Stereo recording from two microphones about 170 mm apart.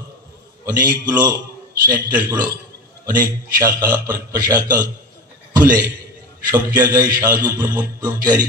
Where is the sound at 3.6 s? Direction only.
20° right (ahead or behind).